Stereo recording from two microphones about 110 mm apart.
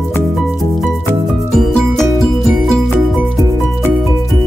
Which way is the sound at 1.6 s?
5° left (ahead or behind).